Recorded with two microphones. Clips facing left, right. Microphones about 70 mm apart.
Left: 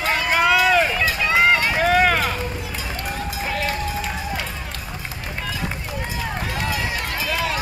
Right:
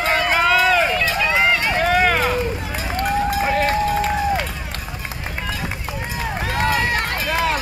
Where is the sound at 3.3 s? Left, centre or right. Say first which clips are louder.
Right 7 dB; right.